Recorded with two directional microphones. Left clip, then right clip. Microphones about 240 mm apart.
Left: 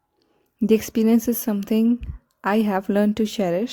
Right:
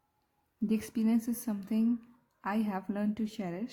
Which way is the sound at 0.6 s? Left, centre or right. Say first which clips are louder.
Left 14 dB; left.